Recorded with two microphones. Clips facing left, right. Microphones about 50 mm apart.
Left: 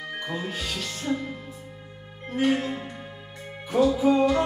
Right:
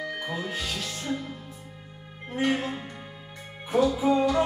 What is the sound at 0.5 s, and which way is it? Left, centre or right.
Speech, centre.